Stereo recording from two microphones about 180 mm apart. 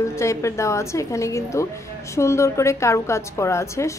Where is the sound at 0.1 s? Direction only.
15° left (ahead or behind).